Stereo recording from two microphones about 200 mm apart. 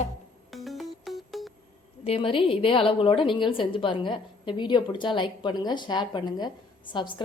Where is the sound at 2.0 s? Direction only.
30° left (ahead or behind).